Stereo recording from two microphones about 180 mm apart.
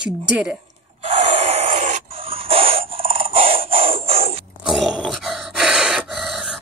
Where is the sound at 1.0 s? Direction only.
35° right (ahead or behind).